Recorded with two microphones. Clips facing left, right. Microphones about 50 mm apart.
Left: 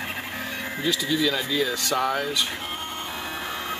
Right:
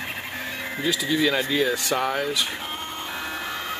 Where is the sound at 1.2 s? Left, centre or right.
Right.